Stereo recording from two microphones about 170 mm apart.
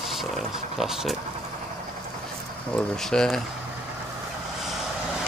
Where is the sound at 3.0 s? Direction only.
5° left (ahead or behind).